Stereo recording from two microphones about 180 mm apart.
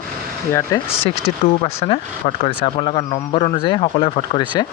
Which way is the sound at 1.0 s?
35° left (ahead or behind).